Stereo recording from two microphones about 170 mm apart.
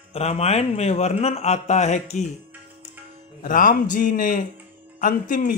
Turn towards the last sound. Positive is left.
turn(degrees=50)  # may be behind; listen again after turning